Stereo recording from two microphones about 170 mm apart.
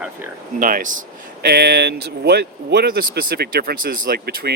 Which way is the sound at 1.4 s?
70° right (ahead or behind).